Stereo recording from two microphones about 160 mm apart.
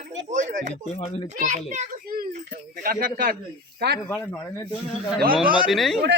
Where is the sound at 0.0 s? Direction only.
50° right (ahead or behind).